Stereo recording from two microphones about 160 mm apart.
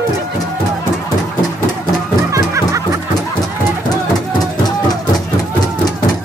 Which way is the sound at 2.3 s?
20° right (ahead or behind).